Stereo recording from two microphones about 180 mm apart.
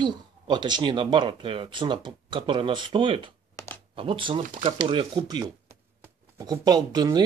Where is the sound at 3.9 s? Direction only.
30° right (ahead or behind).